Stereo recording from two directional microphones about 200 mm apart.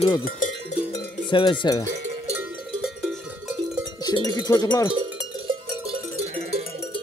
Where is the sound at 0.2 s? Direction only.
40° left (ahead or behind).